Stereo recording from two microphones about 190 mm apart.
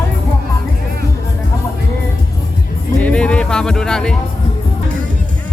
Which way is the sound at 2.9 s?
5° left (ahead or behind).